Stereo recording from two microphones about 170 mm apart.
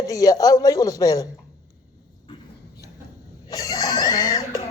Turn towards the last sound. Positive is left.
turn(degrees=20)  # may be behind; listen again after turning